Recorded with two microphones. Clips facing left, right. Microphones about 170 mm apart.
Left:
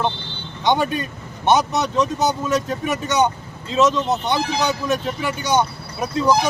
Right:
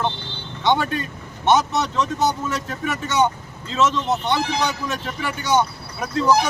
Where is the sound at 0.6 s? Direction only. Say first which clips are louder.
Left 1 dB; 15° left (ahead or behind).